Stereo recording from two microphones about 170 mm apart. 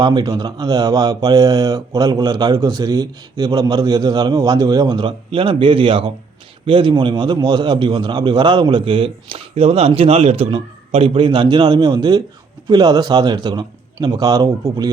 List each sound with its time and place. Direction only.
0.0 s speech: 25° right (ahead or behind)